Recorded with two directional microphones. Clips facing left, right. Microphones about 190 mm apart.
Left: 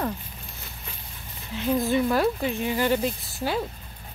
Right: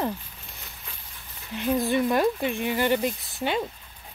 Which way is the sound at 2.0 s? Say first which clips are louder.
Even; 15° right (ahead or behind).